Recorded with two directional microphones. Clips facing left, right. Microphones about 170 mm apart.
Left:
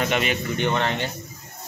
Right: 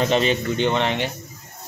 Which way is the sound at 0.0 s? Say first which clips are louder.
Right 4 dB; 30° right (ahead or behind).